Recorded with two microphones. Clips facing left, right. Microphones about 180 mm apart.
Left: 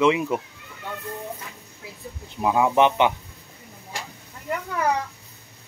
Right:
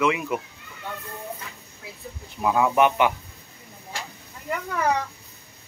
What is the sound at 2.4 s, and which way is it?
Speech, 15° left (ahead or behind).